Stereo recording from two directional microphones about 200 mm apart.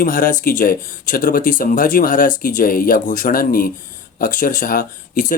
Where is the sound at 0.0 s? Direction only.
45° left (ahead or behind).